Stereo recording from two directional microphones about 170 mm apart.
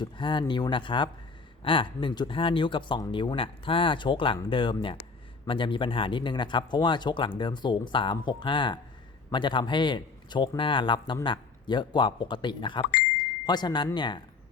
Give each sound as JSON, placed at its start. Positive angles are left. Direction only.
{"t": 0.0, "sound": "a man's voice", "side_deg": 30}